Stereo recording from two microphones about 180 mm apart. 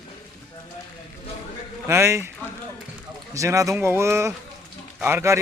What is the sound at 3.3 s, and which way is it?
Speech, 15° right (ahead or behind).